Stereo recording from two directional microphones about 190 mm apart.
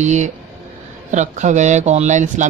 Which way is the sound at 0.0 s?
40° right (ahead or behind).